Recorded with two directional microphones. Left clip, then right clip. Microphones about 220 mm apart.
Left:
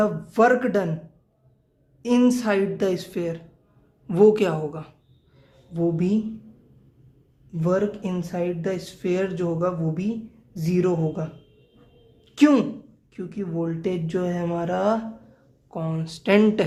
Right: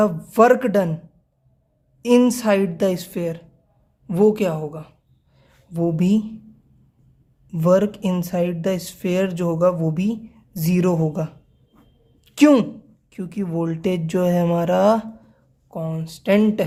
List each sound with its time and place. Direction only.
0.0 s speech: 35° right (ahead or behind)
2.0 s speech: 35° right (ahead or behind)
5.4 s a sound: 40° right (ahead or behind)
7.5 s speech: 40° right (ahead or behind)
12.2 s a sound: 40° right (ahead or behind)
13.1 s speech: 40° right (ahead or behind)
15.7 s speech: 25° right (ahead or behind)